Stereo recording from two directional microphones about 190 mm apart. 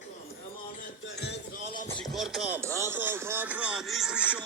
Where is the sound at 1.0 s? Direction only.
65° left (ahead or behind).